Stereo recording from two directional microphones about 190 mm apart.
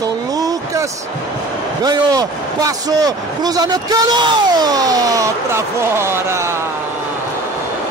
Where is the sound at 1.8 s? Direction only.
20° right (ahead or behind).